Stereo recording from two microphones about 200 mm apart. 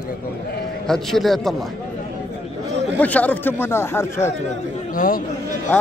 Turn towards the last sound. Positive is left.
turn(degrees=45)  # may be behind; listen again after turning